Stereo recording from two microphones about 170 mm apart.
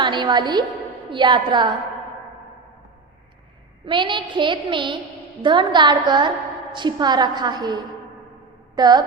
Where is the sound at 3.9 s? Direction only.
30° right (ahead or behind).